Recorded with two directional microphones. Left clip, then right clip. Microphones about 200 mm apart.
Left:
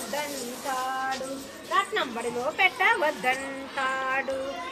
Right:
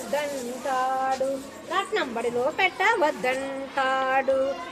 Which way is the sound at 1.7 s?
45° right (ahead or behind).